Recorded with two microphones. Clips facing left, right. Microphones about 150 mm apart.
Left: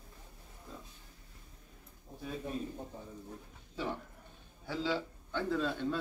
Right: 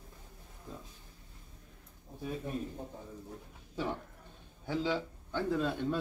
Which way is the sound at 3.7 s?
10° right (ahead or behind).